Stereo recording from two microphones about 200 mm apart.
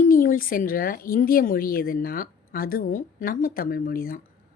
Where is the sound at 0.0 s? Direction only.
40° left (ahead or behind).